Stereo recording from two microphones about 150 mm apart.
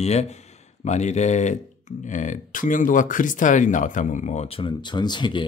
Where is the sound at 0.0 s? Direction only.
45° left (ahead or behind).